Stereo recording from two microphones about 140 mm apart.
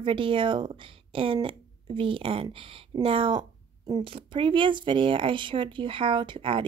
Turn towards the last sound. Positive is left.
turn(degrees=-35)  # may be behind; listen again after turning